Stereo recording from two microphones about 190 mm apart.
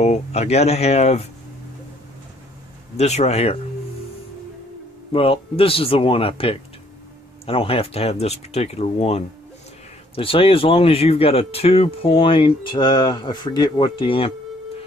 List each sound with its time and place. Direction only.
0.0 s speech: 35° left (ahead or behind)
3.0 s speech: 35° left (ahead or behind)
5.1 s speech: 30° left (ahead or behind)